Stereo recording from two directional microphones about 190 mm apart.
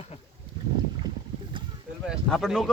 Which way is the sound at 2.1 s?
Centre (ahead or behind).